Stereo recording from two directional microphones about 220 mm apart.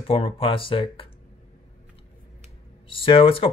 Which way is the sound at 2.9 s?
25° left (ahead or behind).